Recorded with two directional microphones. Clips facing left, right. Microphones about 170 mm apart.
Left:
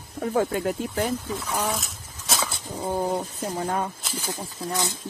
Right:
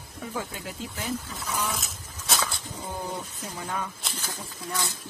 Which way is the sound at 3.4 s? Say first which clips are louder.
Left 7 dB; 40° left (ahead or behind).